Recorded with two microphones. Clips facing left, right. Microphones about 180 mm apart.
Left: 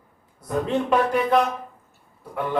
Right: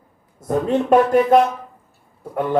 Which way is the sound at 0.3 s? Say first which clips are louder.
Right 5 dB; 45° right (ahead or behind).